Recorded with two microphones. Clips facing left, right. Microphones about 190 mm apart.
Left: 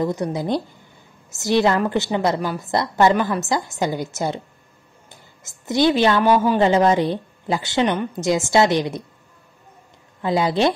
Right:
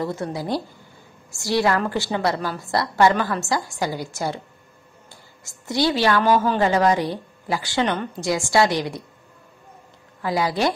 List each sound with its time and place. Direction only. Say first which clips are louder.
0.0 s a woman's voice: left 4 dB; 15° left (ahead or behind)
6.6 s a woman's voice: left 3 dB; 20° left (ahead or behind)
10.2 s a woman's voice: left 3 dB; 25° left (ahead or behind)